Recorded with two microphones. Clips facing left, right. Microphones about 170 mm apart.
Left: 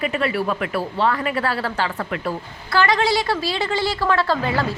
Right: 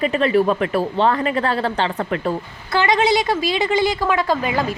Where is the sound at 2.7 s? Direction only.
20° right (ahead or behind).